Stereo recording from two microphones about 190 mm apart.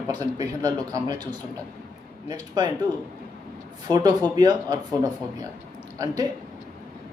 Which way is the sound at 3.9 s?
20° right (ahead or behind).